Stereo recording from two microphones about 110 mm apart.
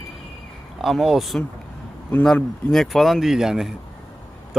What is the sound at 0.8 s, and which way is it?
Speech, 5° right (ahead or behind).